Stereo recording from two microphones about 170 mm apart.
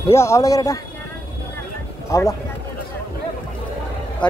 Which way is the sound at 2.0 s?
20° left (ahead or behind).